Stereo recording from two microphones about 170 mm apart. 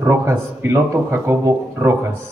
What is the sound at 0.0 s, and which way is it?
Speech, 15° right (ahead or behind).